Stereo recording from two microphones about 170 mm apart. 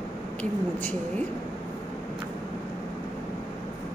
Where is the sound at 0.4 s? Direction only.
10° left (ahead or behind).